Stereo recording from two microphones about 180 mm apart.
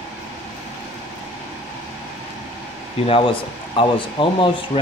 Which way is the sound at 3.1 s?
30° left (ahead or behind).